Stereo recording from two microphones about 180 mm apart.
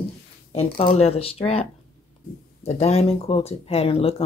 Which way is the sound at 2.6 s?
35° left (ahead or behind).